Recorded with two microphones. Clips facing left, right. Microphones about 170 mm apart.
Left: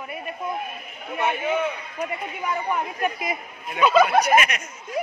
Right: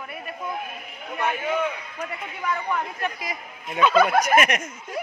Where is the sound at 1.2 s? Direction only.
5° left (ahead or behind).